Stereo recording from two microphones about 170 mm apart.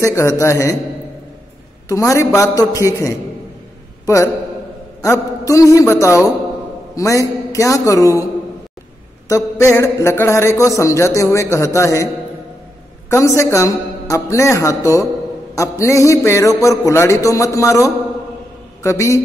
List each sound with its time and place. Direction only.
0.0 s a man's voice: 15° left (ahead or behind)
1.9 s a man's voice: 20° left (ahead or behind)
4.0 s a man's voice: 20° left (ahead or behind)
9.3 s a man's voice: 15° left (ahead or behind)
13.1 s a man's voice: 15° left (ahead or behind)